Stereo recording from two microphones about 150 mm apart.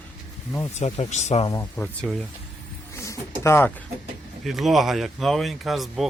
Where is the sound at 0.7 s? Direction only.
50° left (ahead or behind).